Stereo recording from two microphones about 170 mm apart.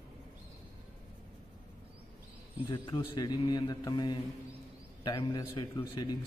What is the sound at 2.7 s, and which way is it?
A man's voice, 30° left (ahead or behind).